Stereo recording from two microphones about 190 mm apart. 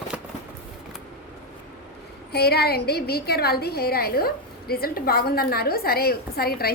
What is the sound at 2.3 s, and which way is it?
A woman's voice, 55° left (ahead or behind).